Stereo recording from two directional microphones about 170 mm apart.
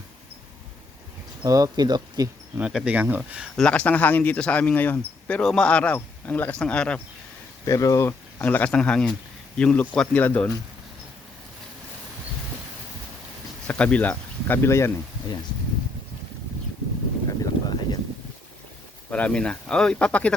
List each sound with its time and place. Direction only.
1.5 s speech: 20° right (ahead or behind)
2.6 s speech: 5° right (ahead or behind)
3.6 s speech: 5° left (ahead or behind)
7.6 s speech: 20° left (ahead or behind)
13.7 s speech: 5° left (ahead or behind)
17.4 s boat: 20° left (ahead or behind)
19.1 s speech: 5° left (ahead or behind)